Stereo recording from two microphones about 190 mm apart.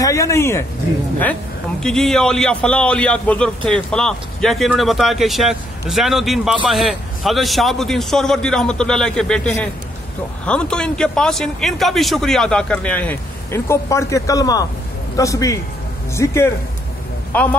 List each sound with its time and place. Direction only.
0.0 s speech: 15° left (ahead or behind)
1.8 s a man's voice: 5° left (ahead or behind)